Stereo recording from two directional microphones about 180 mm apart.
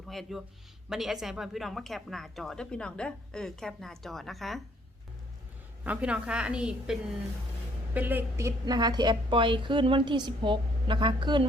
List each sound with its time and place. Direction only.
0.1 s a woman's voice: centre (ahead or behind)
5.8 s a woman's voice: 5° right (ahead or behind); by 11.4 s 25° right (ahead or behind)